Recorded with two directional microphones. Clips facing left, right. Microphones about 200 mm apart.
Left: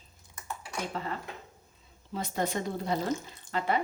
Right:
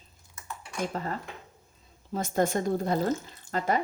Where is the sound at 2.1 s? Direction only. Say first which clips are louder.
Right 5 dB; 45° right (ahead or behind).